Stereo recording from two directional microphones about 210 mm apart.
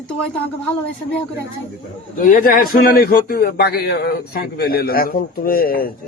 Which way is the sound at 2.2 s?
40° left (ahead or behind).